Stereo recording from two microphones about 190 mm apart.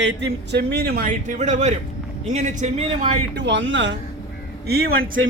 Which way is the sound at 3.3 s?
65° right (ahead or behind).